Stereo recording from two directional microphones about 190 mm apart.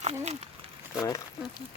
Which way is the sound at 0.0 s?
35° right (ahead or behind).